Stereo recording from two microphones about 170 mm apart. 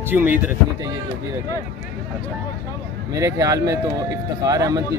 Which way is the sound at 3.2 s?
20° right (ahead or behind).